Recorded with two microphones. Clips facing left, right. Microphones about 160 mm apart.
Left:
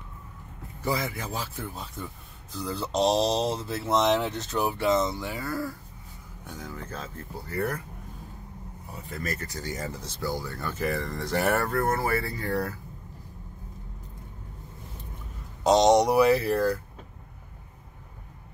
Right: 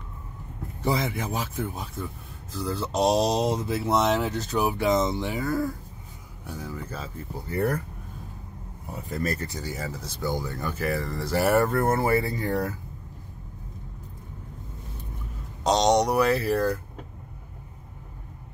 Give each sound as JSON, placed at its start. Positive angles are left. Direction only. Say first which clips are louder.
{"t": 0.8, "sound": "speech", "louder": "right 3 dB", "side_deg": -20}
{"t": 2.5, "sound": "speech", "louder": "right 1 dB", "side_deg": 0}
{"t": 6.4, "sound": "speech", "louder": "right 3 dB", "side_deg": -5}
{"t": 7.4, "sound": "speech", "louder": "right 4 dB", "side_deg": -30}
{"t": 8.9, "sound": "speech", "louder": "right 5 dB", "side_deg": -40}
{"t": 9.6, "sound": "speech", "louder": "right 1 dB", "side_deg": -5}
{"t": 10.2, "sound": "speech", "louder": "right 2 dB", "side_deg": -20}
{"t": 10.8, "sound": "speech", "louder": "even", "side_deg": 0}
{"t": 11.5, "sound": "speech", "louder": "right 4 dB", "side_deg": -20}
{"t": 15.6, "sound": "speech", "louder": "left 2 dB", "side_deg": 5}